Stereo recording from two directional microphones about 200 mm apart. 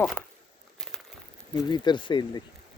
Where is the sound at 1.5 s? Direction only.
20° left (ahead or behind).